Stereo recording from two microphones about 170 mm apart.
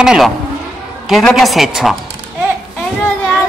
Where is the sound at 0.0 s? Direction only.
5° right (ahead or behind).